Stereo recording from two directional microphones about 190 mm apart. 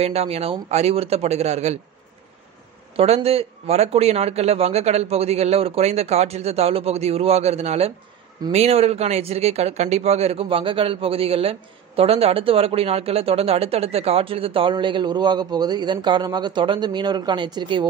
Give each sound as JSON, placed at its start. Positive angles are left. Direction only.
{"t": 0.0, "sound": "speech", "side_deg": -35}
{"t": 3.0, "sound": "speech", "side_deg": -30}